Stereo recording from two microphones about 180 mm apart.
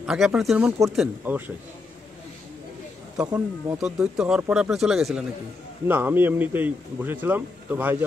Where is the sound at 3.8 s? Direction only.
5° right (ahead or behind).